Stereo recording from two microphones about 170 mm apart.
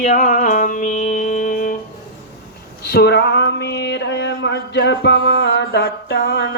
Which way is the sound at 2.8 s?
70° left (ahead or behind).